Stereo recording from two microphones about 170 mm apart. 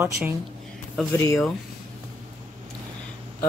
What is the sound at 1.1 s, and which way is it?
Speech, 15° left (ahead or behind).